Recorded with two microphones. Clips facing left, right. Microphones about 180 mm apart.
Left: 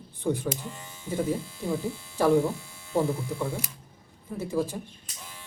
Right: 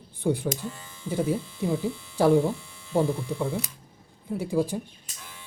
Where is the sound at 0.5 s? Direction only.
15° left (ahead or behind).